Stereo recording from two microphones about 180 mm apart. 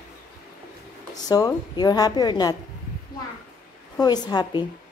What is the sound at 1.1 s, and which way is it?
A woman's voice, 20° left (ahead or behind).